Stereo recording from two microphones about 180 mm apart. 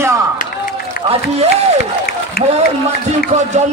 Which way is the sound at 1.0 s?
30° right (ahead or behind).